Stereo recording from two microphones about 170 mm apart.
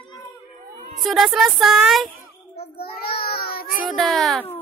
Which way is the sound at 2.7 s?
65° left (ahead or behind).